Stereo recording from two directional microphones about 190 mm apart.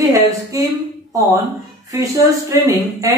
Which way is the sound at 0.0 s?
20° right (ahead or behind).